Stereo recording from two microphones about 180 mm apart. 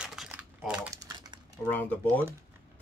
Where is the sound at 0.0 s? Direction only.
5° right (ahead or behind).